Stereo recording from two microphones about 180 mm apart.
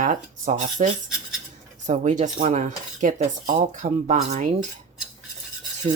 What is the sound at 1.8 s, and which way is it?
Cutlery, 40° right (ahead or behind).